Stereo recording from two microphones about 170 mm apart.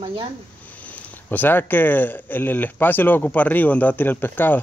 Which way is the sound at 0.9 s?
10° left (ahead or behind).